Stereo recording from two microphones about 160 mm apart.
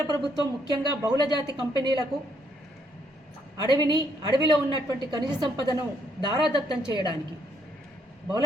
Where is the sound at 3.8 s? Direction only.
25° right (ahead or behind).